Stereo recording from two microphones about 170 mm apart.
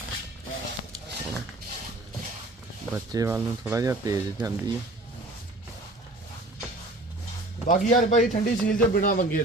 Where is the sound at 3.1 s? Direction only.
20° right (ahead or behind).